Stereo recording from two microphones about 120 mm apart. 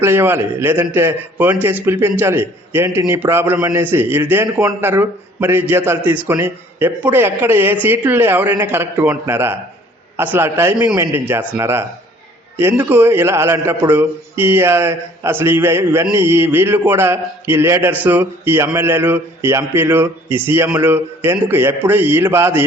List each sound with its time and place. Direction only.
0.0 s a man's voice: 20° right (ahead or behind)